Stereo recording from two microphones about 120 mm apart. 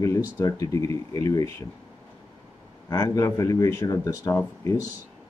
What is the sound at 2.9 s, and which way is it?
Speech, 25° left (ahead or behind).